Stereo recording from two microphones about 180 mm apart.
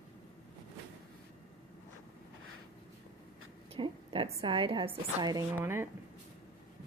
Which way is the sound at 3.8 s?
30° right (ahead or behind).